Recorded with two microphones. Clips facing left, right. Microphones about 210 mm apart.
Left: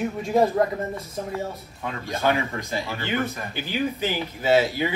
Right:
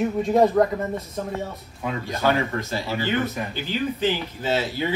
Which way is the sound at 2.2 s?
15° left (ahead or behind).